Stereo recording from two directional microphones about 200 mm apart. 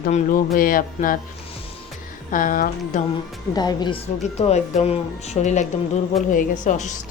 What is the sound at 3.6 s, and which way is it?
A woman's voice, 20° left (ahead or behind).